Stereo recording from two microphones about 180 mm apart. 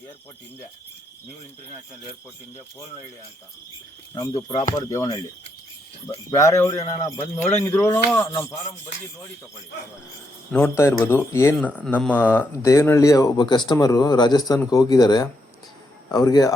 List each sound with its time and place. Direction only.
4.1 s speech: 20° left (ahead or behind)
6.3 s speech: 15° left (ahead or behind)
10.5 s speech: 10° left (ahead or behind)